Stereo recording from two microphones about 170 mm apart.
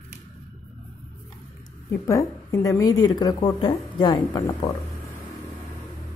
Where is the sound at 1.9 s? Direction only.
15° left (ahead or behind).